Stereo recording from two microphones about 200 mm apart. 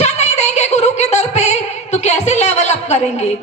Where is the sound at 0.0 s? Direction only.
35° left (ahead or behind).